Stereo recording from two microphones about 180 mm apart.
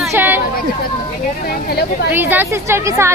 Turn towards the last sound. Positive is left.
turn(degrees=-15)  # may be behind; listen again after turning